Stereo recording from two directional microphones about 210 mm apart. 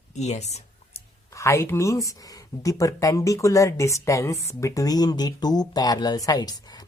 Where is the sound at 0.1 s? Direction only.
30° left (ahead or behind).